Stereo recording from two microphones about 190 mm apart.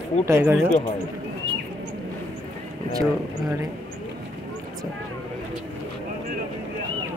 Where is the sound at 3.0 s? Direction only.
15° right (ahead or behind).